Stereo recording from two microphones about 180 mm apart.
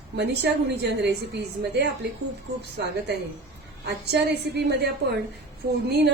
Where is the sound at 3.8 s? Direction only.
70° right (ahead or behind).